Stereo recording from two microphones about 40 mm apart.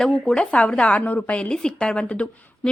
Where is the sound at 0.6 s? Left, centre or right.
Left.